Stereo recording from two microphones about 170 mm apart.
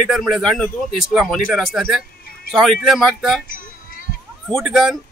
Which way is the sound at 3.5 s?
55° left (ahead or behind).